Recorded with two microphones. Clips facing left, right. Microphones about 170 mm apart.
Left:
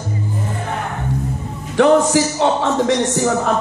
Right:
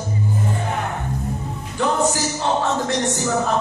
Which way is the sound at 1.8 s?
85° left.